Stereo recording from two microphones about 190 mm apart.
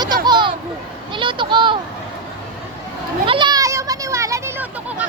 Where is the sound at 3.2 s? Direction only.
25° right (ahead or behind).